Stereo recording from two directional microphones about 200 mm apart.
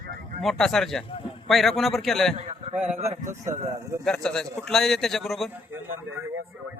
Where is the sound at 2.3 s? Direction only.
30° right (ahead or behind).